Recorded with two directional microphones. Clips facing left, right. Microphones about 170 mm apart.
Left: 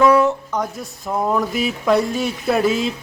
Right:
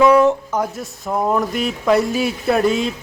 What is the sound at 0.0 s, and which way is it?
Speech, 15° right (ahead or behind).